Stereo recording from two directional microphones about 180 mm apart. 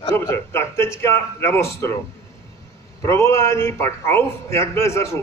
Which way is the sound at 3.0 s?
15° left (ahead or behind).